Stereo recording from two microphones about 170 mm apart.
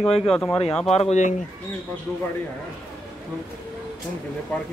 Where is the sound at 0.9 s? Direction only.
40° left (ahead or behind).